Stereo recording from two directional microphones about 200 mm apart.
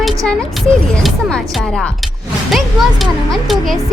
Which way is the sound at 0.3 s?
Centre (ahead or behind).